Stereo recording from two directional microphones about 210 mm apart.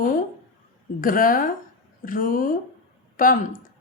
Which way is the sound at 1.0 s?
40° left (ahead or behind).